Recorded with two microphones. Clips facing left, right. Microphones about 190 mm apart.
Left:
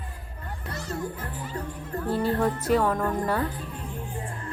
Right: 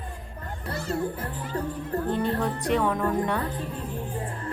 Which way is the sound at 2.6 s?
Centre (ahead or behind).